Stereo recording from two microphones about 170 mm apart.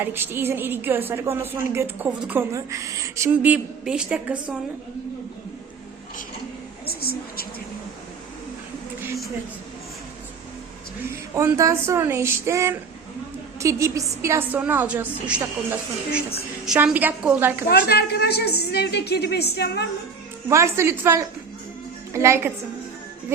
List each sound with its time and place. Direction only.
0.0 s a woman's voice: 10° right (ahead or behind)
6.8 s a woman's voice: 65° left (ahead or behind)
11.3 s a woman's voice: 15° right (ahead or behind)
16.6 s a woman's voice: 5° right (ahead or behind)
17.7 s a woman's voice: 70° left (ahead or behind)
20.5 s a woman's voice: 15° right (ahead or behind)